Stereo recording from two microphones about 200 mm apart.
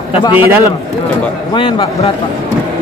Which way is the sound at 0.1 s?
25° left (ahead or behind).